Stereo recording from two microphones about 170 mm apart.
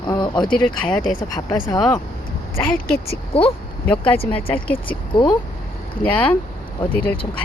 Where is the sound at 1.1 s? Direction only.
25° left (ahead or behind).